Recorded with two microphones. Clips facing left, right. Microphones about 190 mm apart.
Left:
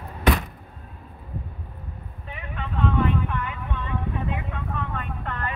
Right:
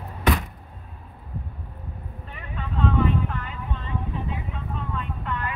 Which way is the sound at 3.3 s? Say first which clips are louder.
Left 2 dB; 65° left (ahead or behind).